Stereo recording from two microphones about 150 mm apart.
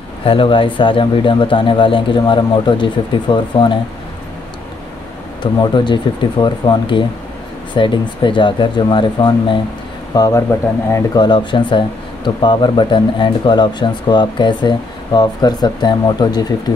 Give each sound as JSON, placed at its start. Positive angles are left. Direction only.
{"t": 0.2, "sound": "speech", "side_deg": 35}
{"t": 5.4, "sound": "speech", "side_deg": 30}